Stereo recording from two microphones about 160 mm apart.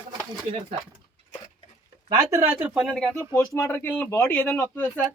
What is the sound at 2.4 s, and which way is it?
Speech, 10° right (ahead or behind).